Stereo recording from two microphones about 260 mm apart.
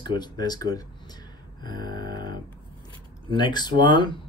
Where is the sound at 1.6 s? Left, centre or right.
Centre.